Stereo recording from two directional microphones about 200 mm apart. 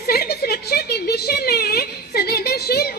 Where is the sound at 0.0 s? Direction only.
50° left (ahead or behind).